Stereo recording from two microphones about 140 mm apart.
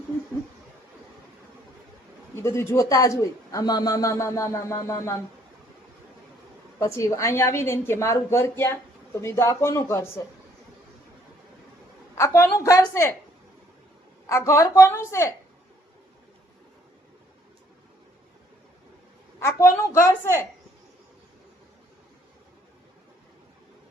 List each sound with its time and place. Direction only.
2.3 s a woman's voice: 20° left (ahead or behind)
6.7 s a woman's voice: 20° left (ahead or behind)
12.1 s a woman's voice: 20° left (ahead or behind)
14.3 s a woman's voice: 20° left (ahead or behind)
19.4 s a woman's voice: 20° left (ahead or behind)